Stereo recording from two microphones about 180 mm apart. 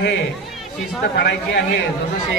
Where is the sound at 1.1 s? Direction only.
70° left (ahead or behind).